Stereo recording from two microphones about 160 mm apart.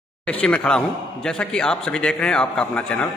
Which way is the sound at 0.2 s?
10° left (ahead or behind).